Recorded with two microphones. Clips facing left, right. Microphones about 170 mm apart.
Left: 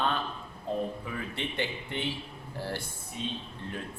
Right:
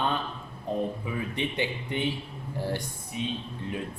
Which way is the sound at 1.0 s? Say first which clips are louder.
Right 4 dB; 15° right (ahead or behind).